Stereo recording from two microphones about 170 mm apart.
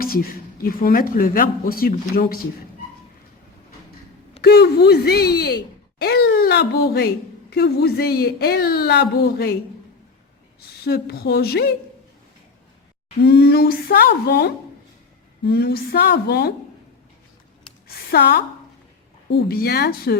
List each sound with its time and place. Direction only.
0.0 s speech: 60° left (ahead or behind)
4.4 s speech: 75° left (ahead or behind)
10.8 s speech: 70° left (ahead or behind)
13.2 s speech: 65° left (ahead or behind)
17.8 s a sound: 65° left (ahead or behind)
19.3 s speech: 65° left (ahead or behind)